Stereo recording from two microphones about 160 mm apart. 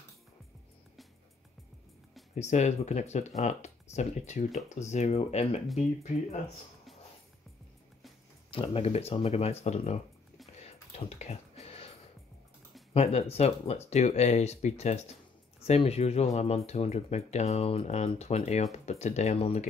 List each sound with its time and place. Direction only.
2.3 s speech: 45° left (ahead or behind)
8.5 s speech: 35° left (ahead or behind)
10.6 s music: 40° left (ahead or behind)
12.9 s speech: 40° left (ahead or behind)